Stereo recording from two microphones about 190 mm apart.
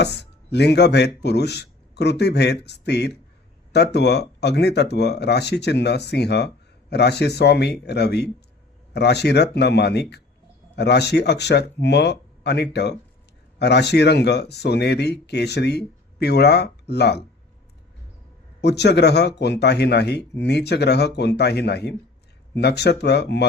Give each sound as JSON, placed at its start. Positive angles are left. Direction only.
{"t": 0.0, "sound": "speech", "side_deg": 60}
{"t": 18.6, "sound": "speech", "side_deg": 60}